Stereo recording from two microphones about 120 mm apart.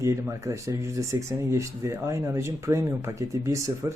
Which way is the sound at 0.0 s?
25° right (ahead or behind).